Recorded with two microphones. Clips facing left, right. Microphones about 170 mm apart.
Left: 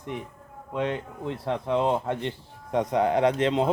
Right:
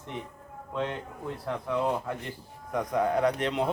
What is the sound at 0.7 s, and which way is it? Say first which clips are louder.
Speech: left 4 dB; 15° left (ahead or behind).